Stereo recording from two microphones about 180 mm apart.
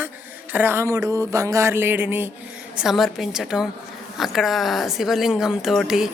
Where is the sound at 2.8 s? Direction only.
Centre (ahead or behind).